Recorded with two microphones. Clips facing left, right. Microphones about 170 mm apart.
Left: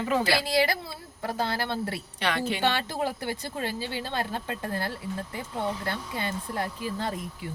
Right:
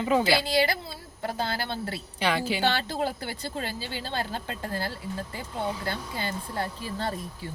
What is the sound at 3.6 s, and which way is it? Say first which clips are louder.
Speech: left 3 dB; 20° left (ahead or behind).